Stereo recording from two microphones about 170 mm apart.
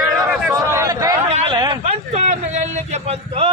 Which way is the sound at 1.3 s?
35° right (ahead or behind).